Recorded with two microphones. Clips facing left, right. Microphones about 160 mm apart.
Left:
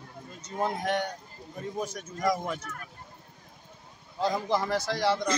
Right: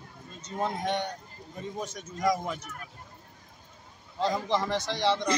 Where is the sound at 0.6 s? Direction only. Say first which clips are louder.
Left 1 dB; 5° left (ahead or behind).